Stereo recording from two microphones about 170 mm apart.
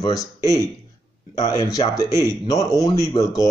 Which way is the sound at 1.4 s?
20° left (ahead or behind).